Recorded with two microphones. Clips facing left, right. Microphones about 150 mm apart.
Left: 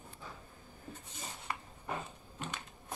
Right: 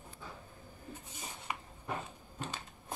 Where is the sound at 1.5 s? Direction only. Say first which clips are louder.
Even; 15° right (ahead or behind).